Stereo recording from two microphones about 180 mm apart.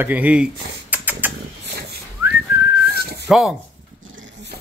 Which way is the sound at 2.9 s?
60° right (ahead or behind).